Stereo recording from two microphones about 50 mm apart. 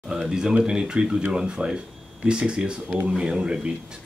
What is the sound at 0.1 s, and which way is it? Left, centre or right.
Speech, centre.